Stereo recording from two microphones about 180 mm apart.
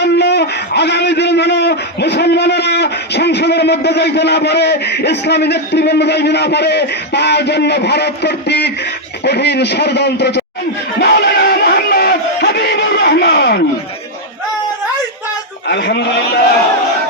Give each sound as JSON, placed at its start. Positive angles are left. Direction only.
{"t": 0.0, "sound": "a man's voice", "side_deg": 70}
{"t": 11.0, "sound": "music", "side_deg": 65}
{"t": 15.6, "sound": "a sound", "side_deg": 65}